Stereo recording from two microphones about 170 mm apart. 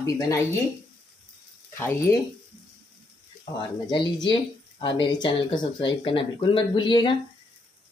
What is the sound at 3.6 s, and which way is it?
Speech, 25° left (ahead or behind).